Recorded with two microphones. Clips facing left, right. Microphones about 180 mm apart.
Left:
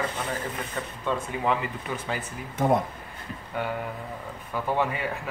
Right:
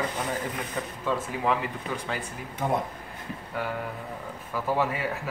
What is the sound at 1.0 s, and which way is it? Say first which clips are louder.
Speech: even; centre (ahead or behind).